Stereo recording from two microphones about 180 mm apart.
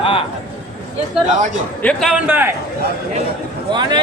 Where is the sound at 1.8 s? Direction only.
Centre (ahead or behind).